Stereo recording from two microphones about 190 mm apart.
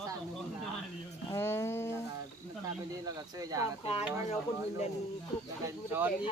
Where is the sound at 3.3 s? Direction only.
20° right (ahead or behind).